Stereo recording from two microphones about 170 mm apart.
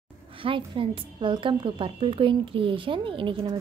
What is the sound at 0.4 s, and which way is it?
A woman's voice, 30° right (ahead or behind).